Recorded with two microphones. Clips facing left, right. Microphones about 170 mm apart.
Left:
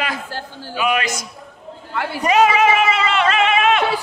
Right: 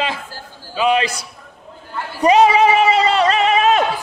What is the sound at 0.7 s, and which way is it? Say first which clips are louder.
Speech: right 3 dB; 30° right (ahead or behind).